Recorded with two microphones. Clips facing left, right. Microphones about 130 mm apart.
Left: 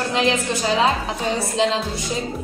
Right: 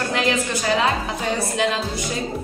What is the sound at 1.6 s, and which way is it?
Speech, 25° left (ahead or behind).